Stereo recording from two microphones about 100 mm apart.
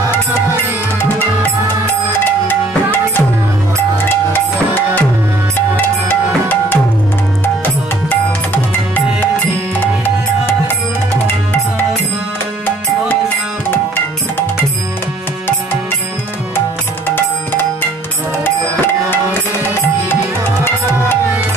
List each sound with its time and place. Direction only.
2.2 s music: 20° left (ahead or behind)
13.7 s music: 20° left (ahead or behind)